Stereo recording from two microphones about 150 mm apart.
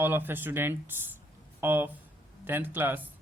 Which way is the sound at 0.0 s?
15° right (ahead or behind).